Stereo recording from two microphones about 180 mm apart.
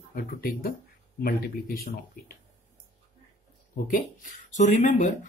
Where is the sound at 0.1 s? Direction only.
50° left (ahead or behind).